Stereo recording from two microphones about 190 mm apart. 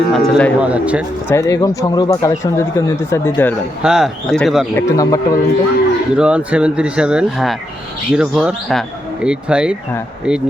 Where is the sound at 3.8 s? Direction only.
Centre (ahead or behind).